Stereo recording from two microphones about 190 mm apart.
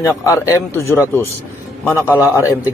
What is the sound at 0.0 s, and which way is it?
A man's voice, 15° left (ahead or behind).